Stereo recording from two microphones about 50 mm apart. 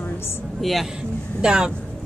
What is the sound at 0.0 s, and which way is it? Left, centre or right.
Music, left.